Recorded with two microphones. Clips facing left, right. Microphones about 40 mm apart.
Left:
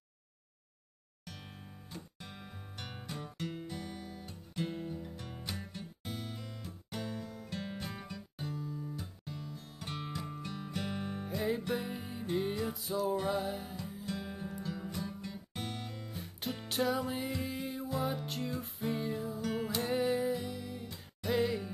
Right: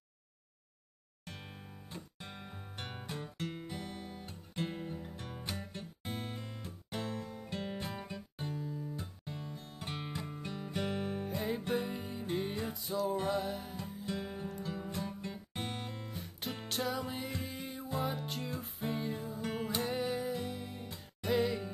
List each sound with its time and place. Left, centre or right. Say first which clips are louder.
2.2 s music: right 1 dB; centre
16.1 s music: left 1 dB; centre
20.3 s music: even; centre
21.3 s music: even; centre